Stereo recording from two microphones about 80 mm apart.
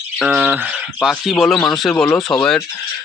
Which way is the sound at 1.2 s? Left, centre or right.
Centre.